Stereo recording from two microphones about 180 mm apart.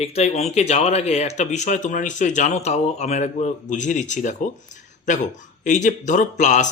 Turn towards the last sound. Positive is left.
turn(degrees=40)  # may be behind; listen again after turning